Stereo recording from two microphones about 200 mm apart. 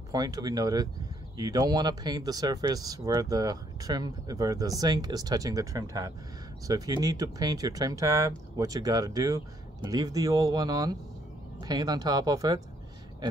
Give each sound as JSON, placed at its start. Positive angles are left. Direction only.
{"t": 0.1, "sound": "speech", "side_deg": -20}